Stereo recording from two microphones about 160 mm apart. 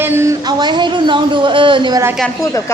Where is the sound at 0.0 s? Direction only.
15° right (ahead or behind); by 2.0 s 30° right (ahead or behind).